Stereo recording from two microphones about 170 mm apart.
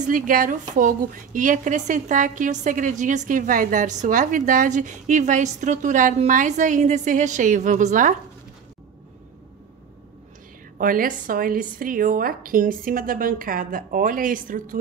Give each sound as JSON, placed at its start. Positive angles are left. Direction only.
{"t": 0.0, "sound": "a woman's voice", "side_deg": -55}
{"t": 10.8, "sound": "a woman's voice", "side_deg": -55}